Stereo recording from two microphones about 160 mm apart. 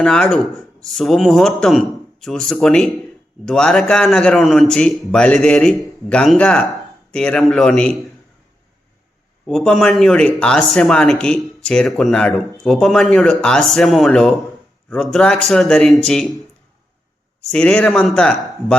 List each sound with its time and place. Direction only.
0.0 s speech: 5° left (ahead or behind)
9.5 s speech: centre (ahead or behind)
17.5 s speech: 5° left (ahead or behind)